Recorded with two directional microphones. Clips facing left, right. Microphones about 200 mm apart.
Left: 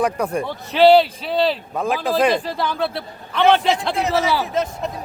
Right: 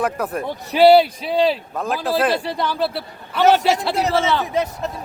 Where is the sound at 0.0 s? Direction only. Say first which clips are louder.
Left 2 dB; 5° right (ahead or behind).